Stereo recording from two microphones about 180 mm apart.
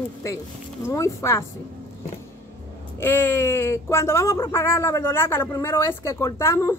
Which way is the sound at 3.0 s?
10° left (ahead or behind).